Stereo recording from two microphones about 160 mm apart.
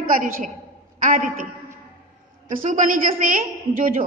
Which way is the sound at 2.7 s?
55° right (ahead or behind).